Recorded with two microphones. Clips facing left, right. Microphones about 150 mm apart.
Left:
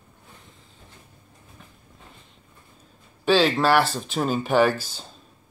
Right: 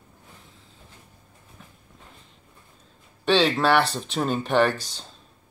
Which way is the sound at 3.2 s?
5° left (ahead or behind).